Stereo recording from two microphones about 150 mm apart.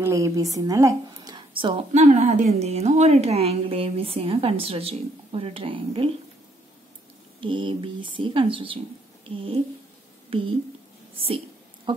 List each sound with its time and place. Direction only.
0.0 s a woman's voice: 20° right (ahead or behind)
1.9 s a woman's voice: 50° right (ahead or behind)
7.3 s a woman's voice: 35° right (ahead or behind)
11.1 s a sound: 40° right (ahead or behind)